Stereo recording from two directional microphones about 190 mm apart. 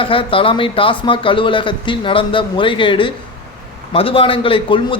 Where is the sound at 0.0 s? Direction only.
30° left (ahead or behind).